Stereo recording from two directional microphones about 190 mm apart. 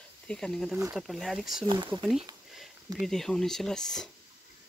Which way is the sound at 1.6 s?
25° right (ahead or behind).